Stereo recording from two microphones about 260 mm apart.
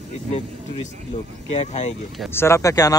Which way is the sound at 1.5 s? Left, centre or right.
Left.